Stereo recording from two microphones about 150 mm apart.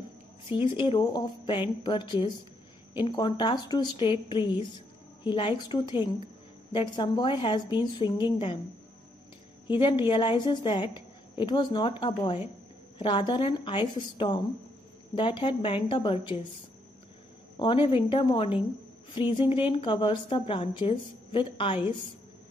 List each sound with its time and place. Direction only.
0.5 s a woman's voice: 30° left (ahead or behind)
9.7 s a woman's voice: 35° left (ahead or behind)
17.8 s a woman's voice: 30° left (ahead or behind)